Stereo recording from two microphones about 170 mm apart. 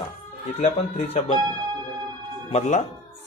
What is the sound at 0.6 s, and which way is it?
Speech, 40° left (ahead or behind).